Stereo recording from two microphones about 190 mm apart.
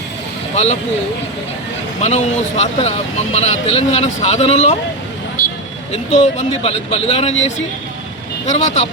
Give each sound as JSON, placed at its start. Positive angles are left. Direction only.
{"t": 0.5, "sound": "speech", "side_deg": 35}
{"t": 2.0, "sound": "speech", "side_deg": 35}
{"t": 5.4, "sound": "vehicle", "side_deg": 50}
{"t": 6.3, "sound": "speech", "side_deg": 30}
{"t": 8.4, "sound": "speech", "side_deg": 35}